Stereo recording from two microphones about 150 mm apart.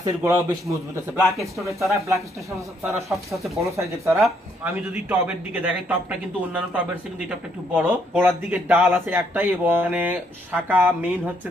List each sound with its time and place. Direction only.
0.0 s a man's voice: 20° right (ahead or behind)
1.4 s speech: centre (ahead or behind)
1.8 s a man's voice: 20° right (ahead or behind)
3.0 s speech: centre (ahead or behind)
3.7 s a man's voice: 20° right (ahead or behind)